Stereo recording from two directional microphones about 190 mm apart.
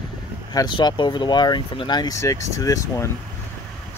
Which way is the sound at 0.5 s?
25° left (ahead or behind).